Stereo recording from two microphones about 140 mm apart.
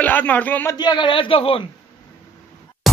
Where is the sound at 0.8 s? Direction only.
35° left (ahead or behind).